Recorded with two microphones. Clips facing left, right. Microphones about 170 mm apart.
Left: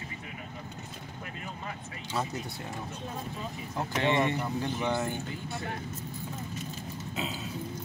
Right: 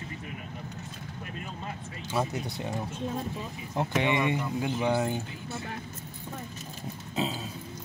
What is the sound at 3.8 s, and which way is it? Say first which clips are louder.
Speech: right 1 dB; 15° right (ahead or behind).